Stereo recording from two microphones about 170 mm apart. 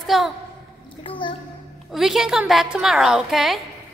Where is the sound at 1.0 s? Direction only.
30° left (ahead or behind).